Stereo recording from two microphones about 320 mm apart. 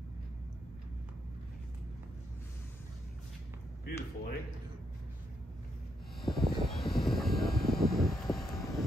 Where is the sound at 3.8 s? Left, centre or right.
Left.